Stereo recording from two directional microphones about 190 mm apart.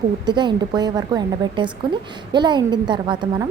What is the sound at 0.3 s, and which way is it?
A woman's voice, 25° right (ahead or behind).